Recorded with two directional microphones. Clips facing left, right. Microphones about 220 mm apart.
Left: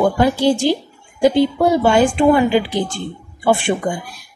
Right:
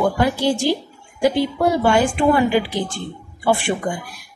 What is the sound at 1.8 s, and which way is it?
A woman's voice, 25° left (ahead or behind).